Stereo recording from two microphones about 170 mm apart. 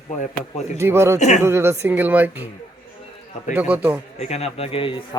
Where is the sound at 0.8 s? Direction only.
15° right (ahead or behind).